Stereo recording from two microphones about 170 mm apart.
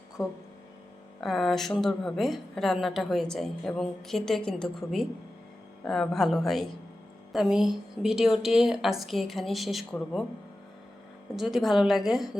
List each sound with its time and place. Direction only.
0.2 s speech: 20° left (ahead or behind)
1.2 s a woman's voice: centre (ahead or behind)
11.3 s a woman's voice: centre (ahead or behind)